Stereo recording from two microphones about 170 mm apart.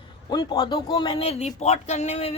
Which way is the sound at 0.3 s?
25° left (ahead or behind).